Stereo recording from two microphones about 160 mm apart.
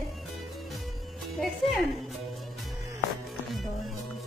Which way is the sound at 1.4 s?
Centre (ahead or behind).